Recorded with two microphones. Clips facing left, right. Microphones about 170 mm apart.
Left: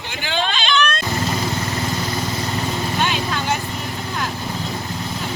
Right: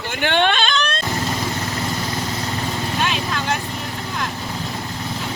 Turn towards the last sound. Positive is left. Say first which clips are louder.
# left 1 dB
turn(degrees=0)  # may be behind; listen again after turning